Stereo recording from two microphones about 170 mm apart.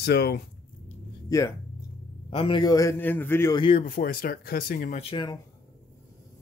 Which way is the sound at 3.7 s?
50° left (ahead or behind).